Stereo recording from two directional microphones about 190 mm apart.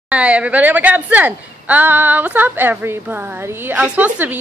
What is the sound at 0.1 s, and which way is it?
A woman's voice, 5° right (ahead or behind).